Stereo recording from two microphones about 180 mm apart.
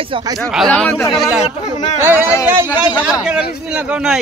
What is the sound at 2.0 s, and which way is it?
Speech, 10° right (ahead or behind).